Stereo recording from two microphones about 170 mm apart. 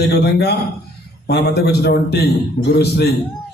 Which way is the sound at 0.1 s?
75° left (ahead or behind).